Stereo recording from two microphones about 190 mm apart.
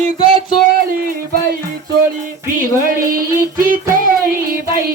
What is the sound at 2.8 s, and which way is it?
Music, 50° right (ahead or behind).